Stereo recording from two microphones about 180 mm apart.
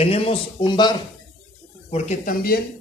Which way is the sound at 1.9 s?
40° left (ahead or behind).